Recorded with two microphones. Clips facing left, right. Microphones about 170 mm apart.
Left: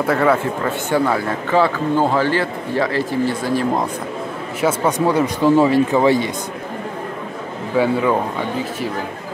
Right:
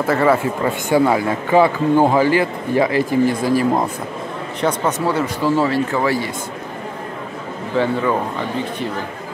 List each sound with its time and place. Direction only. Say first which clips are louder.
0.0 s speech: right 1 dB; centre (ahead or behind)
0.7 s a man's voice: right 3 dB; 10° right (ahead or behind)
4.6 s a man's voice: left 2 dB; 10° left (ahead or behind)
7.7 s a man's voice: left 2 dB; 10° left (ahead or behind)